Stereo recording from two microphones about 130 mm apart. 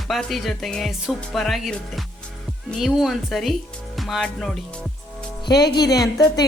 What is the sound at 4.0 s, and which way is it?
Music, centre (ahead or behind).